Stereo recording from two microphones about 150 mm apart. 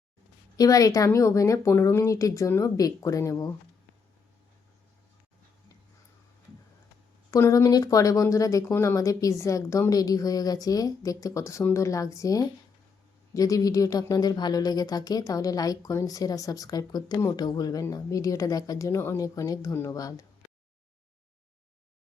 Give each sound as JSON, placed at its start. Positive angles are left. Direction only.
{"t": 0.5, "sound": "speech", "side_deg": 25}
{"t": 7.3, "sound": "speech", "side_deg": 20}